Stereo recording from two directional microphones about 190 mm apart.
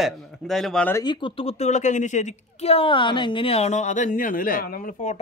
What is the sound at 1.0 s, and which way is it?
A woman's voice, 30° left (ahead or behind).